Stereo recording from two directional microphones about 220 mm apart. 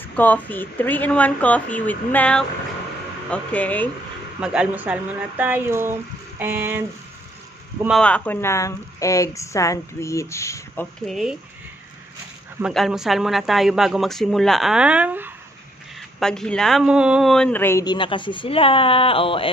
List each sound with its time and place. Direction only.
0.0 s a man's voice: 10° left (ahead or behind)
4.4 s speech: 5° right (ahead or behind)
7.8 s a man's voice: centre (ahead or behind)
11.1 s speech: centre (ahead or behind)
12.5 s speech: centre (ahead or behind)
16.2 s a man's voice: 5° left (ahead or behind); by 19.5 s 25° left (ahead or behind)